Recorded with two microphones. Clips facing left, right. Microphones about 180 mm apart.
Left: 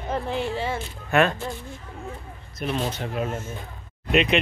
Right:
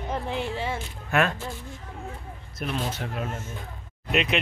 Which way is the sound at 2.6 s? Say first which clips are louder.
Left 3 dB; 5° right (ahead or behind).